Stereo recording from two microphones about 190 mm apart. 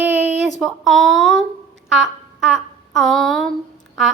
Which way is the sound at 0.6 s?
Centre (ahead or behind).